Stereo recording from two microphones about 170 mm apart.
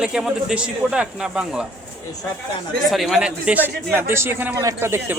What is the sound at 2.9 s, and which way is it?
A man's voice, centre (ahead or behind).